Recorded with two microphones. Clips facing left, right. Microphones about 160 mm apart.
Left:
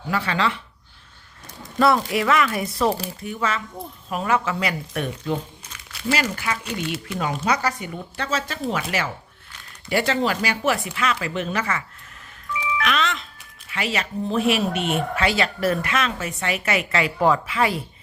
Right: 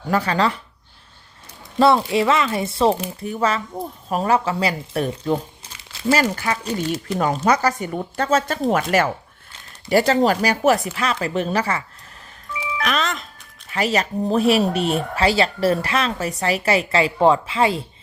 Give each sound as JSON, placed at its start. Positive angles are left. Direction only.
{"t": 0.1, "sound": "speech", "side_deg": -40}
{"t": 1.8, "sound": "speech", "side_deg": -25}
{"t": 6.1, "sound": "speech", "side_deg": -40}
{"t": 12.7, "sound": "music", "side_deg": -40}
{"t": 13.7, "sound": "speech", "side_deg": -40}